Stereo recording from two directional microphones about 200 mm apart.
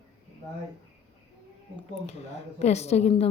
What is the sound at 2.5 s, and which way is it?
Speech, 35° left (ahead or behind).